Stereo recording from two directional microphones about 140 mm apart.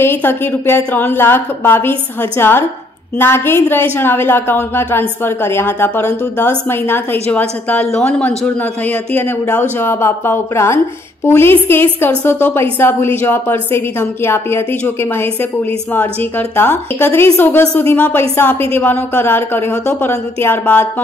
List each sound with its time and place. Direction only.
0.0 s a woman's voice: 15° left (ahead or behind)